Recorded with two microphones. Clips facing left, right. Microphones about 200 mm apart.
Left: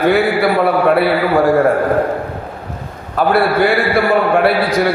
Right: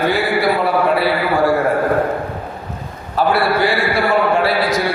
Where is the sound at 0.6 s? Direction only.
55° left (ahead or behind).